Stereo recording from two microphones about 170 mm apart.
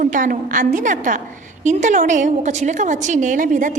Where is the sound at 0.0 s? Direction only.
50° right (ahead or behind).